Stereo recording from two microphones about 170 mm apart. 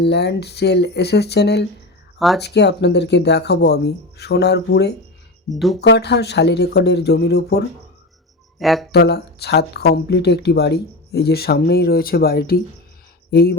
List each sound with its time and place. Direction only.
0.0 s speech: 80° left
2.1 s speech: centre (ahead or behind)
2.4 s speech: 85° left
5.5 s speech: centre (ahead or behind)
5.8 s speech: 85° left
8.5 s speech: centre (ahead or behind)
8.9 s speech: 70° left (ahead or behind)